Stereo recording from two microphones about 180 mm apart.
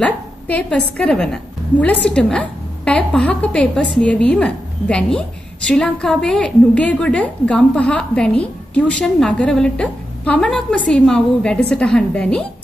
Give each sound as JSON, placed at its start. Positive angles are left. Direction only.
{"t": 0.0, "sound": "a woman's voice", "side_deg": 5}